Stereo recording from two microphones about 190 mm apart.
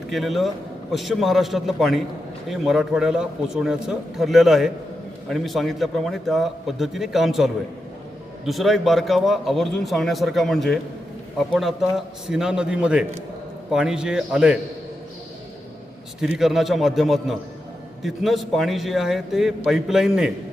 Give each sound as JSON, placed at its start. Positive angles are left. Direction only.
{"t": 0.1, "sound": "a man's voice", "side_deg": 0}
{"t": 16.2, "sound": "a man's voice", "side_deg": 0}